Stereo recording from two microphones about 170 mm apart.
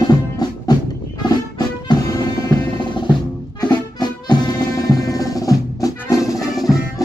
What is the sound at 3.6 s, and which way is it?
Music, 25° left (ahead or behind).